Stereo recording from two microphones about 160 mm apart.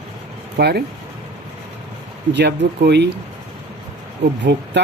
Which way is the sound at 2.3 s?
90° right.